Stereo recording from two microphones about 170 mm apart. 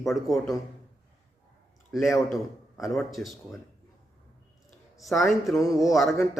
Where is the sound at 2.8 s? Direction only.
Centre (ahead or behind).